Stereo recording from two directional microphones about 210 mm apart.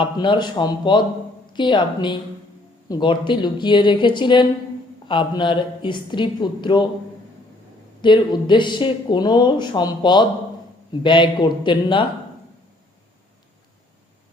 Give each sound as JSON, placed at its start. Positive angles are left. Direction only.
{"t": 0.0, "sound": "speech", "side_deg": 20}
{"t": 8.0, "sound": "speech", "side_deg": 20}